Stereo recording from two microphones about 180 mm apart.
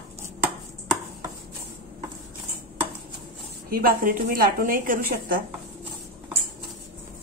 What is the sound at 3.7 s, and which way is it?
A woman's voice, 55° right (ahead or behind).